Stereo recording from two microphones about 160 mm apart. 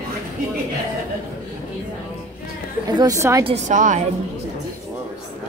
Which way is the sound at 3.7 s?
50° right (ahead or behind).